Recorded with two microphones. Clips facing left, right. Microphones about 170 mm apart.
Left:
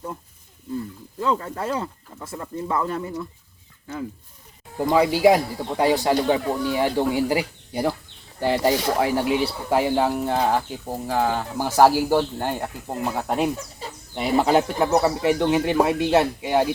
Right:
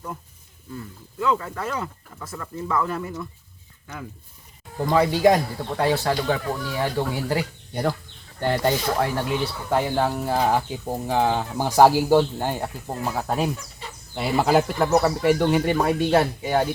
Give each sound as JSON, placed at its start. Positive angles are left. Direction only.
{"t": 1.2, "sound": "speech", "side_deg": 35}
{"t": 4.8, "sound": "speech", "side_deg": 10}
{"t": 13.6, "sound": "chicken", "side_deg": 35}
{"t": 14.2, "sound": "speech", "side_deg": 0}